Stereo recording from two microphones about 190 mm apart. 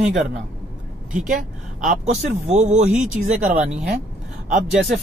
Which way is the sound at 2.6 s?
40° right (ahead or behind).